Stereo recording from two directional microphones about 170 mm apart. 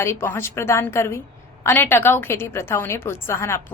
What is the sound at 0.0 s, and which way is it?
A woman's voice, 15° left (ahead or behind).